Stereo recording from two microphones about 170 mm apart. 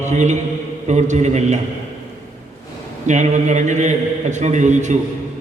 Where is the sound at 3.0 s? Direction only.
45° right (ahead or behind).